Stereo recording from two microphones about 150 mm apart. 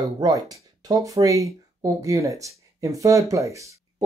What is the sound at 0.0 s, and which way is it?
Speech, 25° right (ahead or behind).